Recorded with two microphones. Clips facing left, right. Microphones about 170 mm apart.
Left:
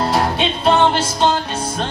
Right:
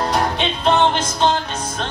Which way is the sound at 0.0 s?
10° left (ahead or behind).